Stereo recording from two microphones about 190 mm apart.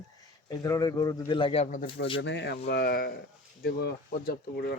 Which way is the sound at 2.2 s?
70° left (ahead or behind).